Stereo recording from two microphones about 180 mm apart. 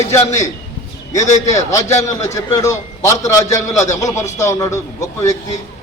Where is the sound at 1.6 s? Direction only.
15° left (ahead or behind).